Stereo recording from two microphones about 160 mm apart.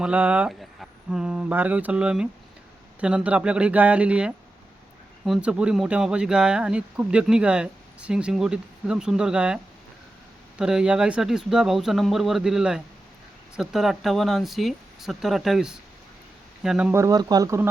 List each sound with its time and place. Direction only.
0.0 s speech: 10° right (ahead or behind)
10.6 s speech: 5° right (ahead or behind)
17.0 s speech: 25° right (ahead or behind)